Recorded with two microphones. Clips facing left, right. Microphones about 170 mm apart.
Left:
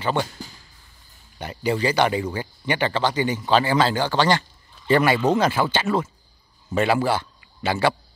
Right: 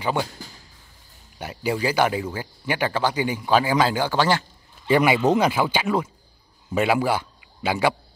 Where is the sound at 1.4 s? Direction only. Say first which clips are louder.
Left 2 dB; 10° right (ahead or behind).